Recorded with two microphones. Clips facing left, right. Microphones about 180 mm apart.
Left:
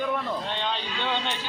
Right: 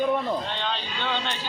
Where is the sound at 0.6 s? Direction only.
10° left (ahead or behind).